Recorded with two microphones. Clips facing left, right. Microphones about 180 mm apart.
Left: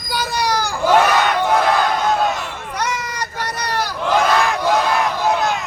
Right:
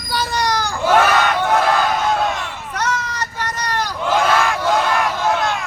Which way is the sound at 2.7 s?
10° left (ahead or behind).